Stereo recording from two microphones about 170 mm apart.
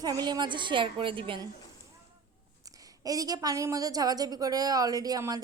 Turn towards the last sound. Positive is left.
turn(degrees=-20)  # may be behind; listen again after turning